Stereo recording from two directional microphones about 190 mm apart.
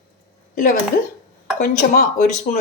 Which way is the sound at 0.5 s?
45° left (ahead or behind).